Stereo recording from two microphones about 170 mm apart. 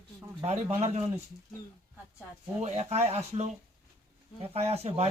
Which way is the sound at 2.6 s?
40° right (ahead or behind).